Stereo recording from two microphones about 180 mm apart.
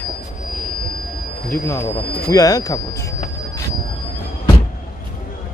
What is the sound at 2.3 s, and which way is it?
Speech, 20° left (ahead or behind).